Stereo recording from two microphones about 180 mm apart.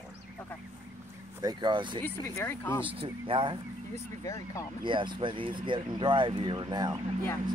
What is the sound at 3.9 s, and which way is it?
Speech, 15° left (ahead or behind).